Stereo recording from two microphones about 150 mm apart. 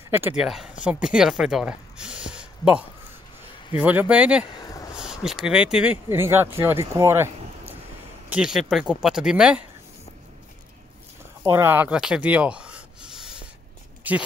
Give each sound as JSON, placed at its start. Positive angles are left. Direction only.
{"t": 0.4, "sound": "speech", "side_deg": 0}
{"t": 3.8, "sound": "speech", "side_deg": -10}
{"t": 4.6, "sound": "a sound", "side_deg": 25}
{"t": 4.9, "sound": "speech", "side_deg": -5}
{"t": 6.0, "sound": "speech", "side_deg": -15}
{"t": 8.3, "sound": "speech", "side_deg": -5}
{"t": 11.5, "sound": "a sound", "side_deg": -15}
{"t": 14.0, "sound": "speech", "side_deg": -10}